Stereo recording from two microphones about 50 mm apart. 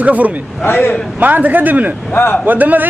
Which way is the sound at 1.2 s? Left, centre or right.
Right.